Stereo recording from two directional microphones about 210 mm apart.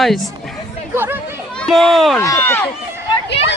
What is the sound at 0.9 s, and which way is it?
Speech, 10° right (ahead or behind).